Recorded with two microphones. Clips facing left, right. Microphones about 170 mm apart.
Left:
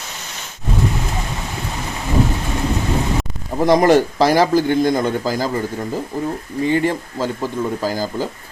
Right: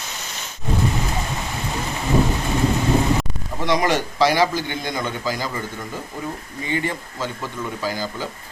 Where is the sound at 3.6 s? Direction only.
45° left (ahead or behind).